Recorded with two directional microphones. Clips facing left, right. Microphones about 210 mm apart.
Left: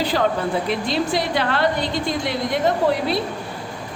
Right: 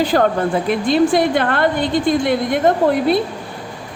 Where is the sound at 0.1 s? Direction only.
50° right (ahead or behind).